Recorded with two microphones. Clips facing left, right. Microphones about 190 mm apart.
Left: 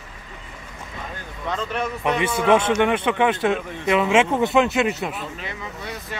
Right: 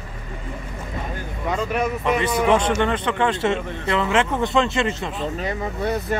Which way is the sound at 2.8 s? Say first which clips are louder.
Left 2 dB; 10° left (ahead or behind).